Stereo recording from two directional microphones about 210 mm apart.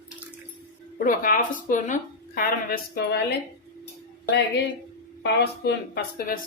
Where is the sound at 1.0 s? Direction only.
40° left (ahead or behind).